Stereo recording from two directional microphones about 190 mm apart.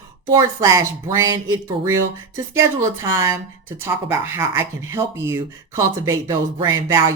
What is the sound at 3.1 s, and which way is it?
Speech, 15° right (ahead or behind).